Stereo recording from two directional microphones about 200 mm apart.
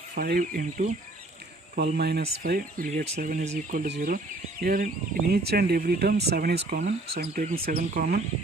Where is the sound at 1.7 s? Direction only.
55° right (ahead or behind).